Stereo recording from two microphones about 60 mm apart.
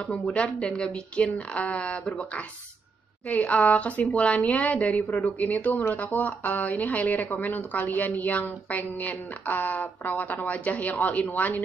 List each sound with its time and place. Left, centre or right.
0.0 s a woman's voice: centre